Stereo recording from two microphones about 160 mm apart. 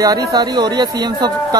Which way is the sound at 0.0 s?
25° right (ahead or behind).